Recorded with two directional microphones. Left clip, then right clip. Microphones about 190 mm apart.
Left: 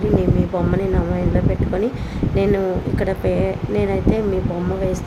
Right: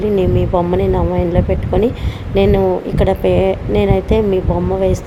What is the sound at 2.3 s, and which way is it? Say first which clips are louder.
Speech: right 6 dB; 25° right (ahead or behind).